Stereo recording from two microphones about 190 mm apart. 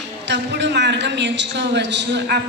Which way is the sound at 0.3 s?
65° right (ahead or behind).